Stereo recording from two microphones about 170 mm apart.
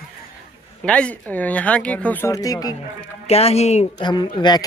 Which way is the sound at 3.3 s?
35° left (ahead or behind).